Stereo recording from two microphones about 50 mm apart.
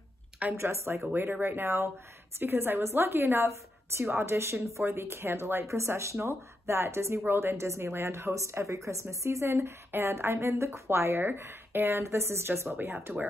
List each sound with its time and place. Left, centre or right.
0.6 s speech: right
1.1 s speech: right
4.0 s a woman's voice: right
12.7 s speech: right